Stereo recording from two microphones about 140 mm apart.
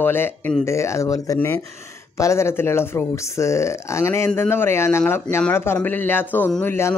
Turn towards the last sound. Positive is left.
turn(degrees=15)  # may be behind; listen again after turning